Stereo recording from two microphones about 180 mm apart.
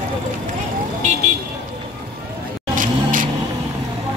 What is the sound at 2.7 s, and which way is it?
Vehicle, 50° right (ahead or behind).